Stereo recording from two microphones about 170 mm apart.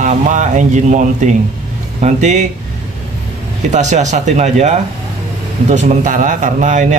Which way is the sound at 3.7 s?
45° right (ahead or behind).